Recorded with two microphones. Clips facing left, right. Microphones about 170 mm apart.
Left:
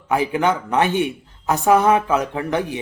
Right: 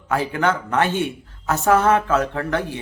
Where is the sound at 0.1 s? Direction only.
15° left (ahead or behind).